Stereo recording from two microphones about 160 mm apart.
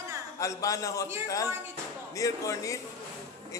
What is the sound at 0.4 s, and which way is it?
A man's voice, 20° left (ahead or behind).